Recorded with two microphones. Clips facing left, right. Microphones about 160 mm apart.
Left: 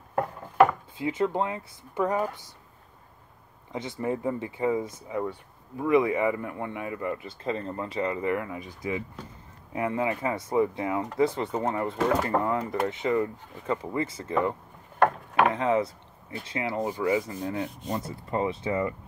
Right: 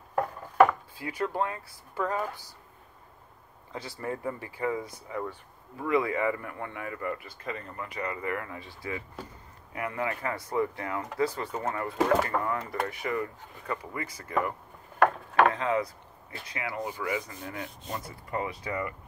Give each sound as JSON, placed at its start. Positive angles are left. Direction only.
{"t": 0.9, "sound": "speech", "side_deg": 20}
{"t": 3.7, "sound": "speech", "side_deg": 20}